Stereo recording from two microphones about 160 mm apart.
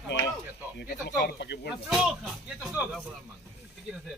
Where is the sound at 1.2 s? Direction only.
90° left.